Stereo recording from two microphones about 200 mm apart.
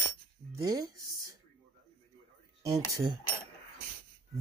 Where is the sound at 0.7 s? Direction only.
20° right (ahead or behind).